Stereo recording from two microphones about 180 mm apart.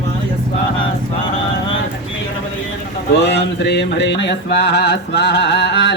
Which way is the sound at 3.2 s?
70° left (ahead or behind).